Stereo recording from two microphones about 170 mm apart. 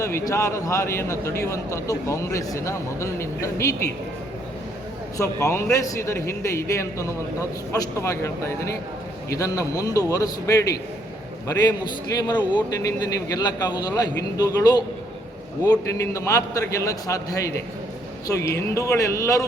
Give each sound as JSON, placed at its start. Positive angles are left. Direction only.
{"t": 0.0, "sound": "speech", "side_deg": 15}
{"t": 5.1, "sound": "a man's voice", "side_deg": 20}
{"t": 12.1, "sound": "a man's voice", "side_deg": 25}